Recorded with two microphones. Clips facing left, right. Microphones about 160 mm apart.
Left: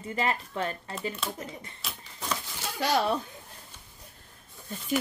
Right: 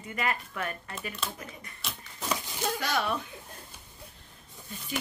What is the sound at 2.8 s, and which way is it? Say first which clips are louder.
Speech: left 7 dB; 35° left (ahead or behind).